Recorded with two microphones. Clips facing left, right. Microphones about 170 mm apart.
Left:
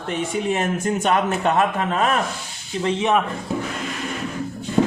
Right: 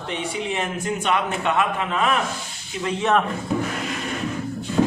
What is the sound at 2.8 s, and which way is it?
Speech, 30° left (ahead or behind).